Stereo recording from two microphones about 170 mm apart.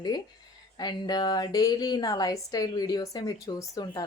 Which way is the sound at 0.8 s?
25° left (ahead or behind).